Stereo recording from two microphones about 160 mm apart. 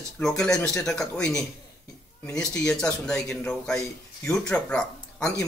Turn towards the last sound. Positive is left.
turn(degrees=5)  # may be behind; listen again after turning